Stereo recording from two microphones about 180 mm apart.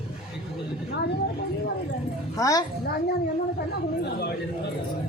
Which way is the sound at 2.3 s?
20° left (ahead or behind).